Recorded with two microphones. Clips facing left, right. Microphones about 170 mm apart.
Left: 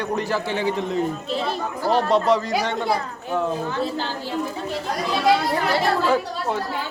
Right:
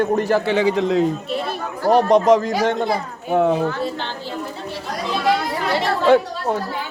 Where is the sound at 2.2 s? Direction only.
45° right (ahead or behind).